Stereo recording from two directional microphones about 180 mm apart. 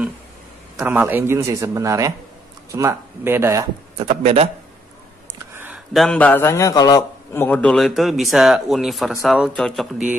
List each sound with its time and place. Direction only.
0.7 s a man's voice: 10° right (ahead or behind)
4.1 s a man's voice: 35° right (ahead or behind)
5.5 s a sound: 10° right (ahead or behind)
5.9 s a man's voice: 5° left (ahead or behind)
7.4 s a man's voice: 5° left (ahead or behind)